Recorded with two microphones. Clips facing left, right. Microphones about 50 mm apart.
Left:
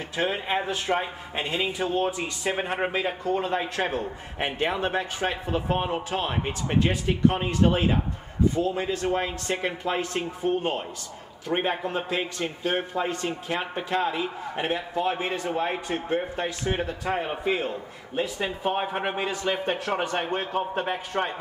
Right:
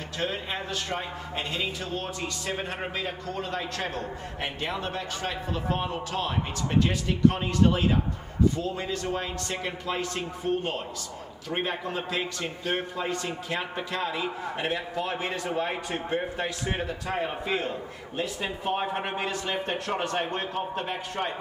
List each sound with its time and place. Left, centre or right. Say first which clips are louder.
0.2 s a man's voice: left 5 dB; left
15.7 s a man's voice: left 2 dB; centre